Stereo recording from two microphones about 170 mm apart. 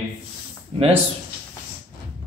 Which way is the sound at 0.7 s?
35° right (ahead or behind).